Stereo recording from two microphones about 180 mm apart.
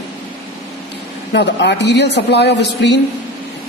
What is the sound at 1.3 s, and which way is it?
Speech, 75° left (ahead or behind).